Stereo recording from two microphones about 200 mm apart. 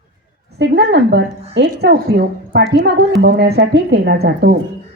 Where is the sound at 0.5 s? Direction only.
55° right (ahead or behind).